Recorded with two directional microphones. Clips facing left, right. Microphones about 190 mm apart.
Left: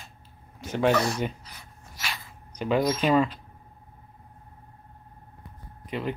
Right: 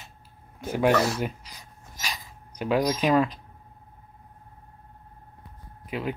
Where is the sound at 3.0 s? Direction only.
Centre (ahead or behind).